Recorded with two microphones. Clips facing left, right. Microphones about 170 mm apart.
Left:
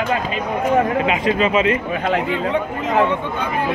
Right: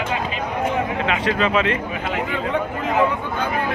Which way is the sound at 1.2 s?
5° left (ahead or behind).